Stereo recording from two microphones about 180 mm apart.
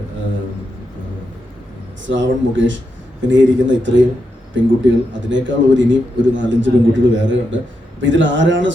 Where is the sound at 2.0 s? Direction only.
90° right.